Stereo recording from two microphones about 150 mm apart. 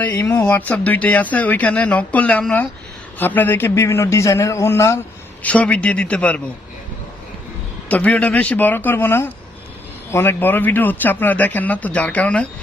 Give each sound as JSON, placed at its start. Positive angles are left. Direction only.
{"t": 0.0, "sound": "speech", "side_deg": 10}
{"t": 7.9, "sound": "speech", "side_deg": 10}